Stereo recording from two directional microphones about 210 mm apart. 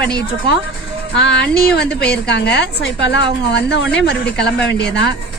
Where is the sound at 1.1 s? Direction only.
55° left (ahead or behind).